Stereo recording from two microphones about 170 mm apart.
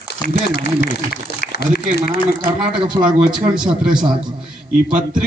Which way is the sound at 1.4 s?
60° left (ahead or behind).